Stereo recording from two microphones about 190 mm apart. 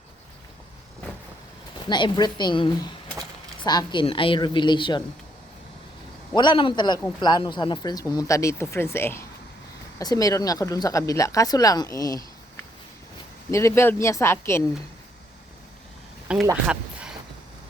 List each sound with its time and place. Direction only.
1.9 s a woman's voice: 25° left (ahead or behind)
6.3 s a woman's voice: 25° left (ahead or behind)
13.5 s speech: 15° left (ahead or behind)
16.5 s a sound: 5° right (ahead or behind)